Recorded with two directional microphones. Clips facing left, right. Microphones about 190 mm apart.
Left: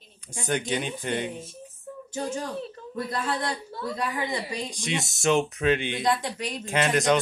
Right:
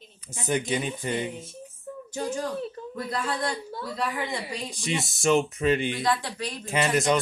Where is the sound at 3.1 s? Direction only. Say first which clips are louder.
Even; 25° left (ahead or behind).